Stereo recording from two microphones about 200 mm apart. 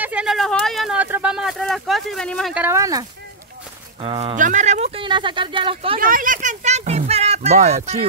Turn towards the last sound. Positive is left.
turn(degrees=-35)  # may be behind; listen again after turning